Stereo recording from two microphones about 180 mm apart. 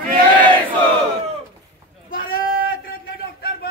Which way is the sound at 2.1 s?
50° left (ahead or behind).